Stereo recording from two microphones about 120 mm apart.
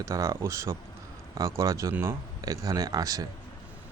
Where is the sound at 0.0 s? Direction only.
25° right (ahead or behind).